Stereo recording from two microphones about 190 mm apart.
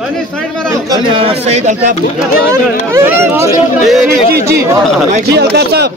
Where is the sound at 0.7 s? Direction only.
20° right (ahead or behind).